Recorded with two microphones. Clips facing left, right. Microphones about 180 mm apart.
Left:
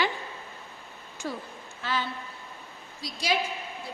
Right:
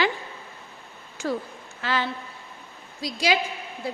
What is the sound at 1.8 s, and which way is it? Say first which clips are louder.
A woman's voice: right 4 dB; 90° right.